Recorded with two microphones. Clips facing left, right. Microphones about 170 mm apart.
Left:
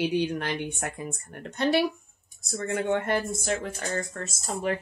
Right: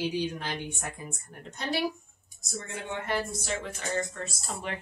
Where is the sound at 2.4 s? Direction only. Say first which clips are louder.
Left 9 dB; 55° left (ahead or behind).